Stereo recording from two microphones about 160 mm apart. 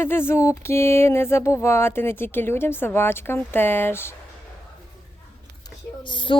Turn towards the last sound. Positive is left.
turn(degrees=30)  # may be behind; listen again after turning